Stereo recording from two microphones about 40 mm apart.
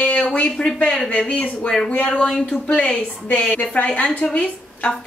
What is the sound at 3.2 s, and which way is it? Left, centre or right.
A woman's voice, left.